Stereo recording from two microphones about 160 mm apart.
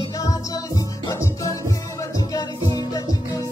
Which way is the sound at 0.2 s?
20° left (ahead or behind).